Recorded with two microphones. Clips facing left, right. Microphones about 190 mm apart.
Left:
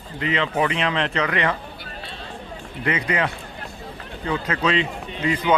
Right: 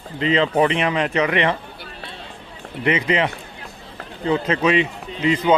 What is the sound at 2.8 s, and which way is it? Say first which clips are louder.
Speech: right 4 dB; 20° right (ahead or behind).